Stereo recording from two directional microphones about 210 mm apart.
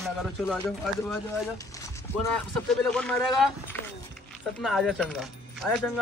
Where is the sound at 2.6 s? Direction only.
5° left (ahead or behind).